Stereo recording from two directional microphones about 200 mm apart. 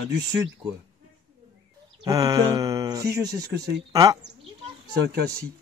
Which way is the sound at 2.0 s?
15° right (ahead or behind).